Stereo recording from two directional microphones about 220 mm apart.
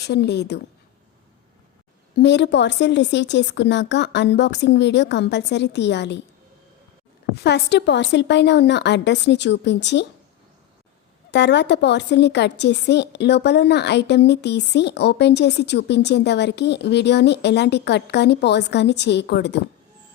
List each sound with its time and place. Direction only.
0.0 s a woman's voice: 50° left (ahead or behind)
2.1 s a woman's voice: 50° left (ahead or behind)
7.4 s a woman's voice: 50° left (ahead or behind)
11.3 s a woman's voice: 50° left (ahead or behind)